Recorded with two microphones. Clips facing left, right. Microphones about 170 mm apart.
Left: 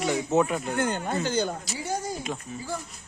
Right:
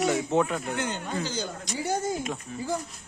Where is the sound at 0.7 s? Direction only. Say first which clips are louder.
Left 4 dB; 50° left (ahead or behind).